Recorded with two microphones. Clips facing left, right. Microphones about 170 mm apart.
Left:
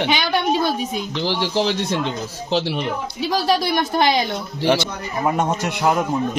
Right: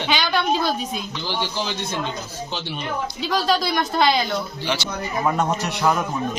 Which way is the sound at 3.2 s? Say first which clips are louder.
Left 2 dB; 20° left (ahead or behind).